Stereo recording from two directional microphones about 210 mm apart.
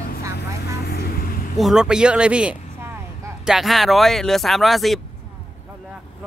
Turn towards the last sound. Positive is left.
turn(degrees=0)  # may be behind; listen again after turning